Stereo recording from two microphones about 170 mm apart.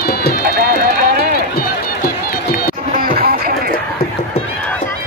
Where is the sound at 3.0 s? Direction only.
60° right (ahead or behind).